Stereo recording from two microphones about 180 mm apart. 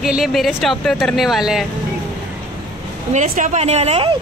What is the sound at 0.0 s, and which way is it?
Speech, centre (ahead or behind).